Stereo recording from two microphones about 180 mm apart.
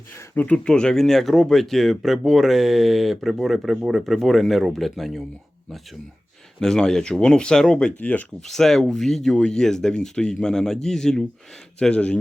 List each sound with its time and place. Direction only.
0.2 s speech: 10° left (ahead or behind)
6.6 s speech: 5° left (ahead or behind)